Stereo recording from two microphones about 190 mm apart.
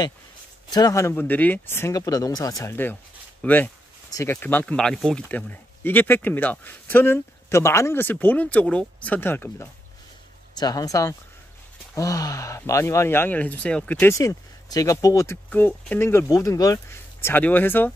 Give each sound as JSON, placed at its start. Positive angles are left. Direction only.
{"t": 0.7, "sound": "speech", "side_deg": 20}